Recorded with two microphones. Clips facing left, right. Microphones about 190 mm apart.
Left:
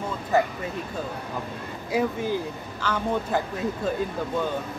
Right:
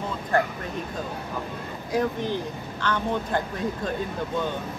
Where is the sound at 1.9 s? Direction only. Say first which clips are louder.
Left 1 dB; 10° left (ahead or behind).